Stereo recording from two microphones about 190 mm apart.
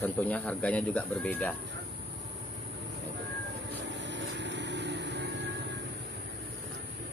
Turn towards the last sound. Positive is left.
turn(degrees=-65)  # may be behind; listen again after turning